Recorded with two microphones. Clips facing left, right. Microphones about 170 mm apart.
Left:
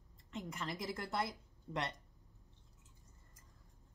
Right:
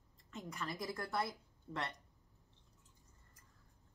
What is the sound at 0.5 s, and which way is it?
A woman's voice, 20° left (ahead or behind).